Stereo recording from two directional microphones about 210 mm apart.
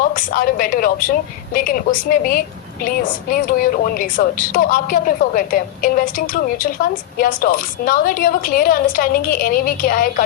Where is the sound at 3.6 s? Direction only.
40° left (ahead or behind).